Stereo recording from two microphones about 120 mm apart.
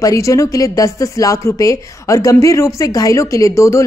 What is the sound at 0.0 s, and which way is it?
Speech, 25° left (ahead or behind).